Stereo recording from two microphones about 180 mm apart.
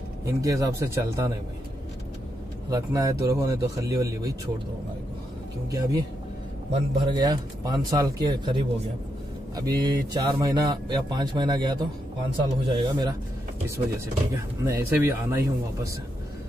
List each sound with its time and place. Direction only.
0.2 s speech: 15° right (ahead or behind)
2.7 s a man's voice: 20° right (ahead or behind)
5.7 s a man's voice: 20° right (ahead or behind)
13.7 s speech: 15° right (ahead or behind)